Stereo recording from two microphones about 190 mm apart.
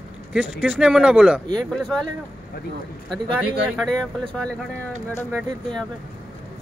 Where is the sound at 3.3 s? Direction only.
5° right (ahead or behind).